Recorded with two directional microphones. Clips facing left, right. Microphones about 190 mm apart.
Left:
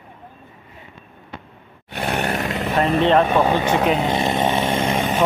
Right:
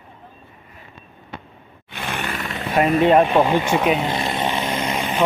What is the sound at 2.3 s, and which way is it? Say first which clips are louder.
Vehicle: left 5 dB; 40° left (ahead or behind).